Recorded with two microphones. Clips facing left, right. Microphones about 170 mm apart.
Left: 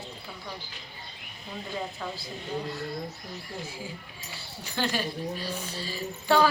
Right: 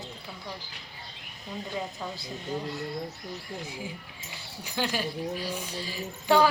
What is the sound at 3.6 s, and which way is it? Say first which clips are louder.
Speech: right 1 dB; 15° right (ahead or behind).